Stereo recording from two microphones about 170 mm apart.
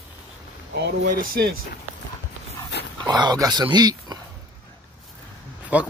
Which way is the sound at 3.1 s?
25° right (ahead or behind).